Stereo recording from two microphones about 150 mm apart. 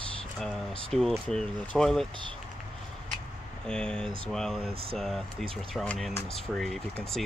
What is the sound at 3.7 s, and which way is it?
Speech, 5° left (ahead or behind).